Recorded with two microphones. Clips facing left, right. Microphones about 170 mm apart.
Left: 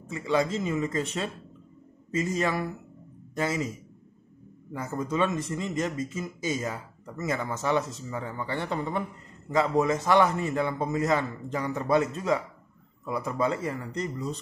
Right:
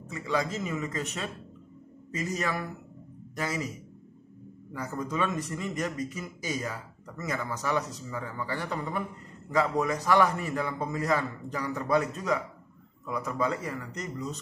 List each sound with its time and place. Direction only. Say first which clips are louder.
0.1 s a man's voice: left 4 dB; 25° left (ahead or behind)
4.7 s a man's voice: left 3 dB; 25° left (ahead or behind)